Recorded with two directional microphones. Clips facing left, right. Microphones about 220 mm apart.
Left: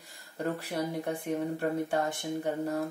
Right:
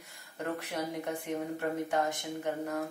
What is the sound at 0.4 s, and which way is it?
Speech, 35° left (ahead or behind).